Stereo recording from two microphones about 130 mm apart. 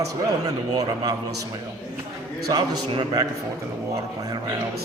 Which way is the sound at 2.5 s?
40° right (ahead or behind).